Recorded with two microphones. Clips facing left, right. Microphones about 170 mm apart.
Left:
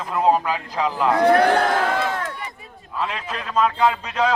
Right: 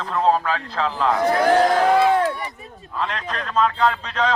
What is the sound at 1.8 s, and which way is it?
Crowd, 35° right (ahead or behind).